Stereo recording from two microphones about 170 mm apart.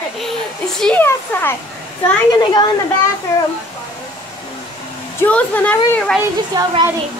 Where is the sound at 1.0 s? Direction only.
15° left (ahead or behind).